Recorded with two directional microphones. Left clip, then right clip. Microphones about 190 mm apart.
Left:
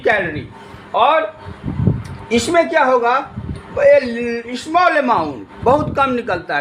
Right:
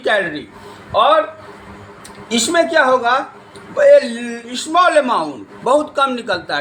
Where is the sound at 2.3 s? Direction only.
20° left (ahead or behind).